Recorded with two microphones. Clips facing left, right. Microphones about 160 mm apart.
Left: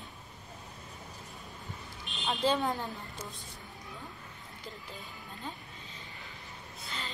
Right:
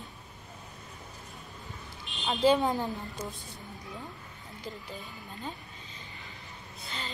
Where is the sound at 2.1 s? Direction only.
Centre (ahead or behind).